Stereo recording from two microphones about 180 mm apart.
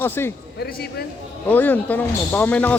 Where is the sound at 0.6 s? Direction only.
60° left (ahead or behind).